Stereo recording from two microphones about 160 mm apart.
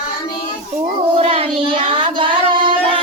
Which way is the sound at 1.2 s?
40° right (ahead or behind).